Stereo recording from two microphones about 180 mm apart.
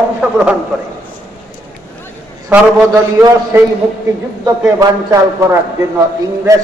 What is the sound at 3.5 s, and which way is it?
A man's voice, 15° right (ahead or behind).